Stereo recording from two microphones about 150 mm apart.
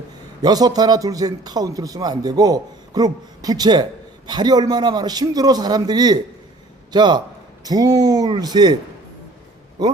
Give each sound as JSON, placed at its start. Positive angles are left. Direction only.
{"t": 0.4, "sound": "a man's voice", "side_deg": -25}